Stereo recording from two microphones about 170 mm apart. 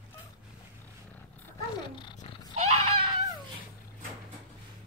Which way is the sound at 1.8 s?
25° left (ahead or behind).